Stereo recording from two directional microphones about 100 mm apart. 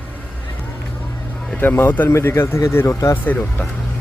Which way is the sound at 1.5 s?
20° left (ahead or behind).